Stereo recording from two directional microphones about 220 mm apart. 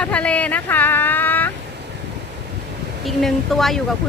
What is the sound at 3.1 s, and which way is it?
Speech, centre (ahead or behind).